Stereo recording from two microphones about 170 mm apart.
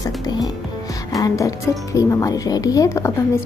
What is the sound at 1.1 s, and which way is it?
A woman's voice, 20° left (ahead or behind).